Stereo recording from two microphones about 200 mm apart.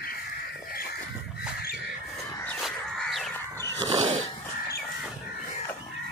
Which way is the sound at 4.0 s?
35° right (ahead or behind).